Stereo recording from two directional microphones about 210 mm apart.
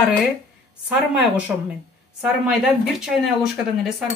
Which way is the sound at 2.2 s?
Centre (ahead or behind).